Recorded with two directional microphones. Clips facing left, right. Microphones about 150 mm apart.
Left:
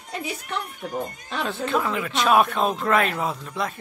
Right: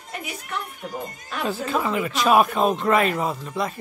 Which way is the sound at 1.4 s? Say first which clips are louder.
Right 1 dB; centre (ahead or behind).